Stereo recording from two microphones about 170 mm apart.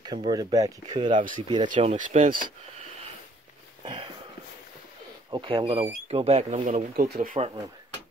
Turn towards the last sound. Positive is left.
turn(degrees=-55)  # may be behind; listen again after turning